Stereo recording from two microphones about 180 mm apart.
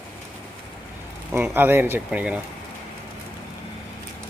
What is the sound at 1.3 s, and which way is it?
Speech, 10° right (ahead or behind).